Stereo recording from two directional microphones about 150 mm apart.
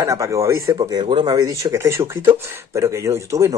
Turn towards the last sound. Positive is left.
turn(degrees=-20)  # may be behind; listen again after turning